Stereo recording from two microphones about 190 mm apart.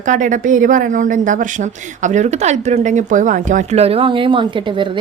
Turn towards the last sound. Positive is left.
turn(degrees=-25)  # may be behind; listen again after turning